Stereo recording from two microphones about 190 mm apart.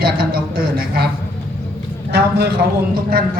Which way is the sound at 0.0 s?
50° right (ahead or behind).